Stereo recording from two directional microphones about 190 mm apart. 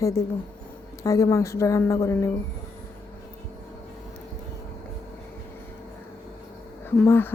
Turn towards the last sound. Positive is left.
turn(degrees=10)  # may be behind; listen again after turning